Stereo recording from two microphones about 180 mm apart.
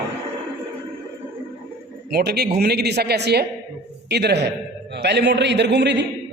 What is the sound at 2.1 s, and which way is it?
A man's voice, 65° right (ahead or behind).